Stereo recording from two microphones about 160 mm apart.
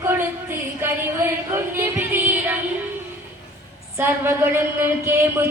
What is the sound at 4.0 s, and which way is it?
Speech, 15° right (ahead or behind).